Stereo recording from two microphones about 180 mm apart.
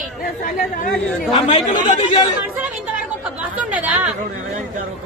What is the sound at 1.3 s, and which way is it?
Speech, 30° left (ahead or behind).